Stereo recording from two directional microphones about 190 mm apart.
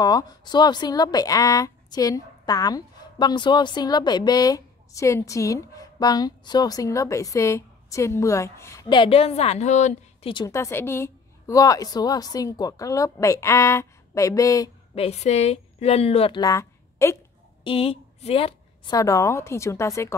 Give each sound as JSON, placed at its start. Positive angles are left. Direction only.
{"t": 0.0, "sound": "speech", "side_deg": 20}
{"t": 10.3, "sound": "a woman's voice", "side_deg": 15}
{"t": 15.0, "sound": "a woman's voice", "side_deg": 35}
{"t": 17.6, "sound": "a woman's voice", "side_deg": 30}
{"t": 18.9, "sound": "a woman's voice", "side_deg": 15}